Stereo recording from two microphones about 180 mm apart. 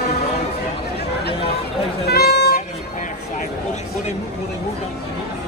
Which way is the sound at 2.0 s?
65° left (ahead or behind).